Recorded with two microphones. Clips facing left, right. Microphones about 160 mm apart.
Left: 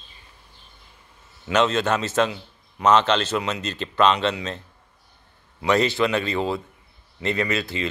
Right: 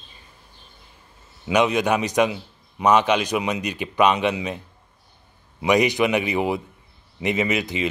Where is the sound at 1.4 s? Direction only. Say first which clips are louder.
Right 1 dB; 15° right (ahead or behind).